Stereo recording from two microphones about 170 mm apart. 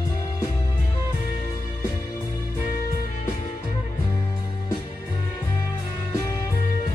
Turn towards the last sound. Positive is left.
turn(degrees=20)  # may be behind; listen again after turning